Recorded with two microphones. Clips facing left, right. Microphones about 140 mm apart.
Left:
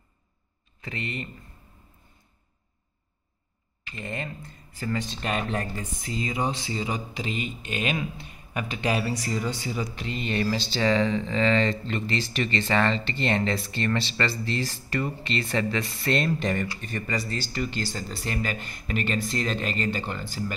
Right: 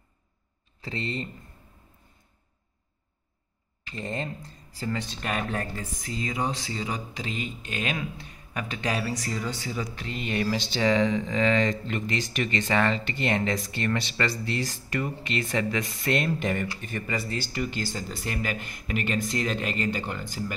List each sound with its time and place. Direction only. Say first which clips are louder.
0.7 s speech: right 2 dB; 30° right (ahead or behind)
3.9 s speech: right 2 dB; 30° right (ahead or behind)
5.6 s speech: left 1 dB; 15° left (ahead or behind)
10.1 s speech: left 1 dB; 5° right (ahead or behind)